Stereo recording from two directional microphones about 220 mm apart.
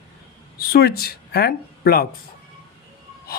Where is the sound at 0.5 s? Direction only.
45° left (ahead or behind).